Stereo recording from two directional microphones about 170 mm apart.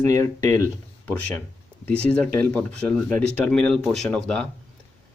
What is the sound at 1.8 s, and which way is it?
Speech, 10° left (ahead or behind).